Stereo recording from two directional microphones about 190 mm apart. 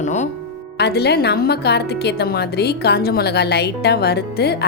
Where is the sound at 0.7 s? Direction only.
60° left (ahead or behind).